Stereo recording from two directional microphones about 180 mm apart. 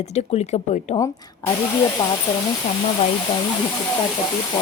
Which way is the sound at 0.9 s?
20° left (ahead or behind).